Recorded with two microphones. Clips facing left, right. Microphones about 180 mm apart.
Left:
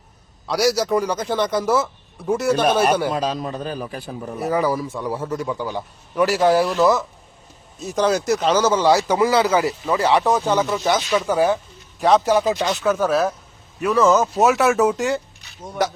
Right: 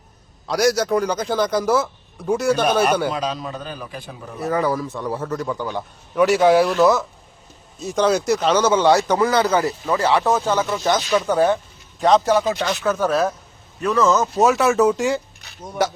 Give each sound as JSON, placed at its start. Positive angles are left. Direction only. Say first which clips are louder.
{"t": 0.4, "sound": "a man's voice", "louder": "right 1 dB", "side_deg": 0}
{"t": 3.1, "sound": "a man's voice", "louder": "left 2 dB", "side_deg": 40}
{"t": 4.4, "sound": "speech", "louder": "even", "side_deg": 10}
{"t": 10.7, "sound": "a man's voice", "louder": "even", "side_deg": 5}